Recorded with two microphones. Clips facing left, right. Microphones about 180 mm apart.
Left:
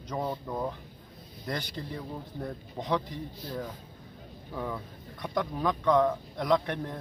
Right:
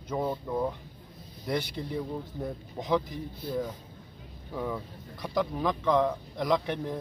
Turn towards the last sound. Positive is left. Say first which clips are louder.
# left 1 dB
turn(degrees=0)  # may be behind; listen again after turning